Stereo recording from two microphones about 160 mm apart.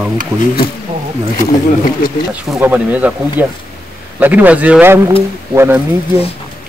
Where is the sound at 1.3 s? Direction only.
60° left (ahead or behind).